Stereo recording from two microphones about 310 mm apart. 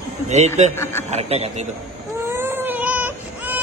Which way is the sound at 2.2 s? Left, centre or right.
Centre.